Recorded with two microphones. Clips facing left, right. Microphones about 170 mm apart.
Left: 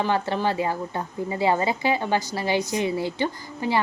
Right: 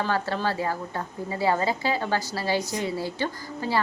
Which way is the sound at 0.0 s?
20° left (ahead or behind).